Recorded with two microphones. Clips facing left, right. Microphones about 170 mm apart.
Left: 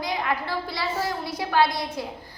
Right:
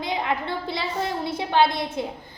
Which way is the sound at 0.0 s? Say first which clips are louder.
Right 1 dB; 25° right (ahead or behind).